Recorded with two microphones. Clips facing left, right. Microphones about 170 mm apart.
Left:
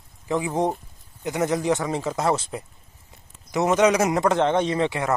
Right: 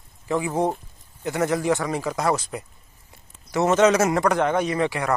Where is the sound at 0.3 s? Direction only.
20° left (ahead or behind).